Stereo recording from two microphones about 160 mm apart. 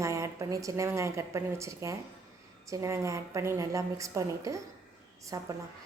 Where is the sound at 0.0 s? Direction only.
20° right (ahead or behind).